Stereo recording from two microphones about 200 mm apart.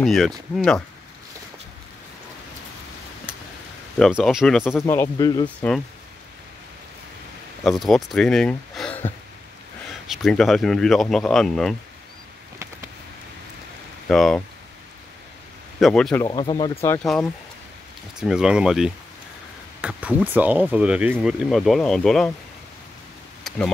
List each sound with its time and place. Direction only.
0.0 s speech: centre (ahead or behind)
4.0 s speech: centre (ahead or behind)
4.7 s speech: 10° left (ahead or behind)
7.6 s speech: centre (ahead or behind)
14.0 s speech: centre (ahead or behind)
15.8 s speech: 5° left (ahead or behind)
16.3 s speech: 20° left (ahead or behind)
17.0 s speech: centre (ahead or behind)
23.5 s a sound: centre (ahead or behind)